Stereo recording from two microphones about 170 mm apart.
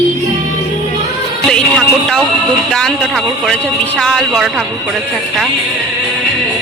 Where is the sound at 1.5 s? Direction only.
5° left (ahead or behind).